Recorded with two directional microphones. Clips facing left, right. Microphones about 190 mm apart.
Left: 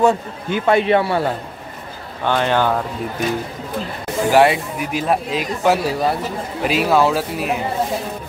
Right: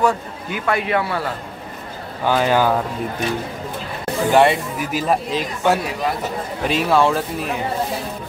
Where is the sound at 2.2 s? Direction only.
5° right (ahead or behind).